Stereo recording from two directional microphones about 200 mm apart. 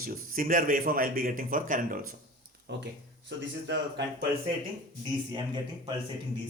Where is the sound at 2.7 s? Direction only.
60° right (ahead or behind).